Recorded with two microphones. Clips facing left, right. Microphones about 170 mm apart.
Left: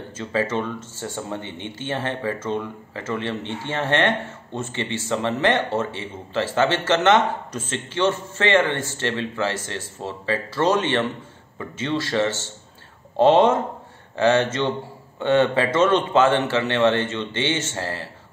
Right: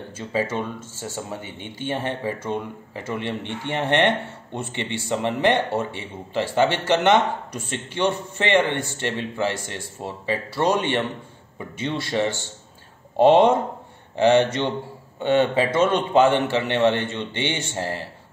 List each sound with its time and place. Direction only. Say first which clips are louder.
0.2 s a man's voice: left 1 dB; 10° right (ahead or behind)